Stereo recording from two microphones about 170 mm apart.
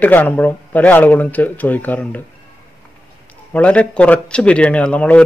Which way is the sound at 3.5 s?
10° left (ahead or behind).